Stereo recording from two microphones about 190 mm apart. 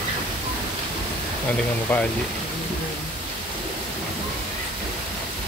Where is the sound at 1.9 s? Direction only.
10° left (ahead or behind).